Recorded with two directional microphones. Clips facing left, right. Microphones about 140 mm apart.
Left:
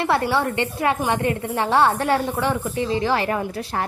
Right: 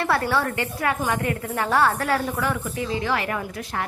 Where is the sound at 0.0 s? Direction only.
20° left (ahead or behind).